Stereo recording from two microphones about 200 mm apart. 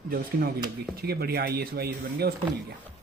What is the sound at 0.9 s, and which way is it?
Speech, 50° right (ahead or behind).